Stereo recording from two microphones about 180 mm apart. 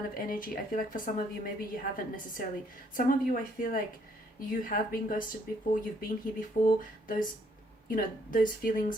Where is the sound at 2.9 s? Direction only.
50° left (ahead or behind).